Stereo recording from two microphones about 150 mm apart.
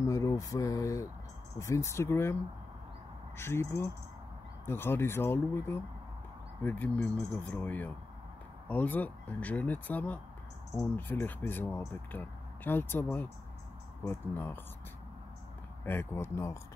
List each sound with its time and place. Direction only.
0.0 s speech: 20° left (ahead or behind)
3.3 s speech: 15° left (ahead or behind)
15.8 s speech: 15° left (ahead or behind)